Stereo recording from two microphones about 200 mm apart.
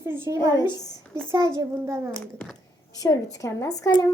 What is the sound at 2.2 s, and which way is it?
Speech, 5° left (ahead or behind).